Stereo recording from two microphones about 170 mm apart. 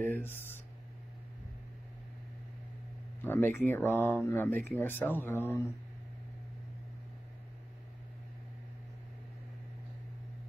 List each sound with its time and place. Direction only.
0.0 s speech: 10° left (ahead or behind)
3.3 s speech: 10° left (ahead or behind)